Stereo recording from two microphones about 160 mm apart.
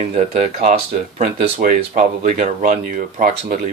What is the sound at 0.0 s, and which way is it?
Speech, 50° right (ahead or behind).